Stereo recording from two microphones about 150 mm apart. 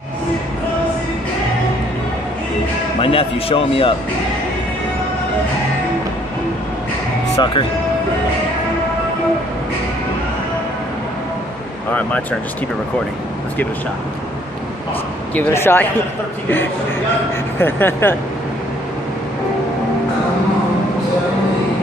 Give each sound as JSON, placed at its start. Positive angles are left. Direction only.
{"t": 3.0, "sound": "a man's voice", "side_deg": 35}
{"t": 7.3, "sound": "a man's voice", "side_deg": 35}
{"t": 11.9, "sound": "speech", "side_deg": 10}
{"t": 15.3, "sound": "speech", "side_deg": 15}
{"t": 17.6, "sound": "speech", "side_deg": 15}